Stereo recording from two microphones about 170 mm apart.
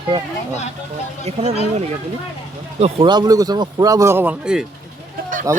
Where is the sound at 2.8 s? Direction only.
35° right (ahead or behind); by 4.6 s 5° right (ahead or behind).